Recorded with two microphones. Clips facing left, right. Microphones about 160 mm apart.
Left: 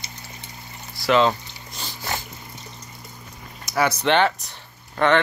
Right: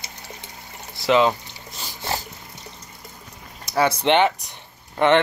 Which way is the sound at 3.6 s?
25° right (ahead or behind).